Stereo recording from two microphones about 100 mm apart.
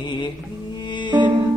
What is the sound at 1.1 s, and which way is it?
Music, 50° right (ahead or behind).